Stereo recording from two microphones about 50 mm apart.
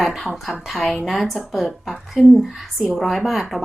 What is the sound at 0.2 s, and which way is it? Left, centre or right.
Speech, centre.